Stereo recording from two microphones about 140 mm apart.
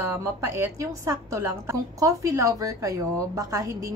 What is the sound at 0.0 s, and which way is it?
A woman's voice, 20° right (ahead or behind).